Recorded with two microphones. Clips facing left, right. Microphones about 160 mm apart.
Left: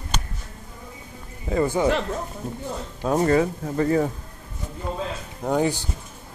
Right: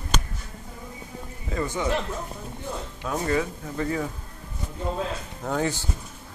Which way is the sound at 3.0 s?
40° left (ahead or behind).